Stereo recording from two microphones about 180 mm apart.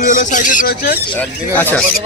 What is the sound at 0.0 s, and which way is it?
Speech, 45° left (ahead or behind).